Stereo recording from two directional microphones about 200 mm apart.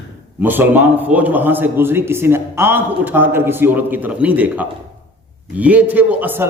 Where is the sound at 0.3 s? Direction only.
10° right (ahead or behind).